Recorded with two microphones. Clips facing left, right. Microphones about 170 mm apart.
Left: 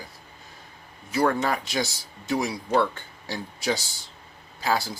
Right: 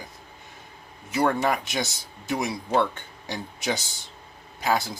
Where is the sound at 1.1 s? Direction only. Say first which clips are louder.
Even; 20° right (ahead or behind).